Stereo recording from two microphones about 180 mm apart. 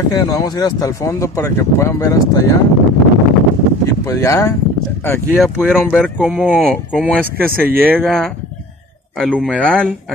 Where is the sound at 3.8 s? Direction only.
15° left (ahead or behind).